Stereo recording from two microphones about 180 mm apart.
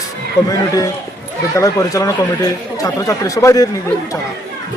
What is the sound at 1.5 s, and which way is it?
Speech, 15° left (ahead or behind).